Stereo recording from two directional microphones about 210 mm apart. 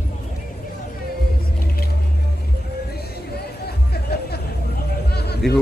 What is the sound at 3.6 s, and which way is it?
Music, 50° left (ahead or behind).